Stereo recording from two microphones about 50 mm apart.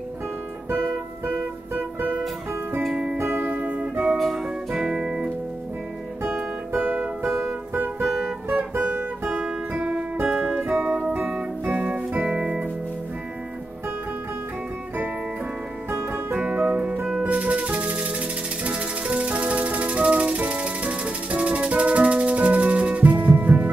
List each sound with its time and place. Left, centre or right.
1.2 s music: right
2.9 s music: right
3.2 s music: right
4.2 s music: centre
6.7 s music: right
8.5 s guitar: right
9.2 s music: right
11.7 s music: right
15.9 s music: right
16.3 s music: right
23.1 s music: right